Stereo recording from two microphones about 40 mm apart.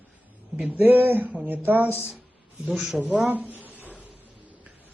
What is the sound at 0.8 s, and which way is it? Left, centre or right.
Speech, right.